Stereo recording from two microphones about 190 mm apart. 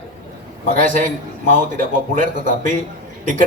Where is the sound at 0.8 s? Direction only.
40° right (ahead or behind).